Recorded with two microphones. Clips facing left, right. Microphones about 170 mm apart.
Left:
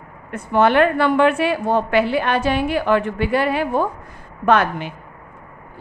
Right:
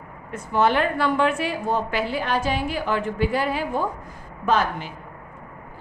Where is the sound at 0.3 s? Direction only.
65° left (ahead or behind).